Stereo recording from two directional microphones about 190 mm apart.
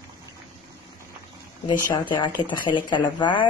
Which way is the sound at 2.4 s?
25° left (ahead or behind).